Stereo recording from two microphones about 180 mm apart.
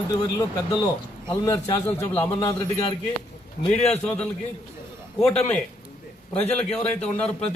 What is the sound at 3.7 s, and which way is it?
Speech, 35° left (ahead or behind).